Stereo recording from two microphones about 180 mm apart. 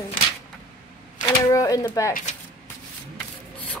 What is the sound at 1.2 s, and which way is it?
Speech, 20° left (ahead or behind).